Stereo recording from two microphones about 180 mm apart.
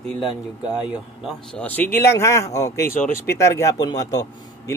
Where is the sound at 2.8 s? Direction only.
55° left (ahead or behind).